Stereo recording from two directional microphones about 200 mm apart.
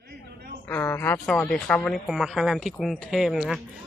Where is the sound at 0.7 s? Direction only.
10° left (ahead or behind).